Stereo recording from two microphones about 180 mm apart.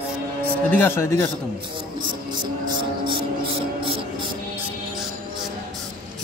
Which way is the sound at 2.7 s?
25° right (ahead or behind).